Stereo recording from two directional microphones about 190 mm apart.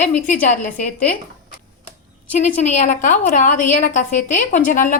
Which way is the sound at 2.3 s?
40° left (ahead or behind).